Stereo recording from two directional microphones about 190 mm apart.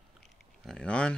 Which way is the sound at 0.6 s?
5° left (ahead or behind).